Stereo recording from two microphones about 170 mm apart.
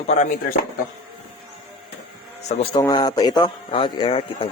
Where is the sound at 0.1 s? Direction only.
45° left (ahead or behind).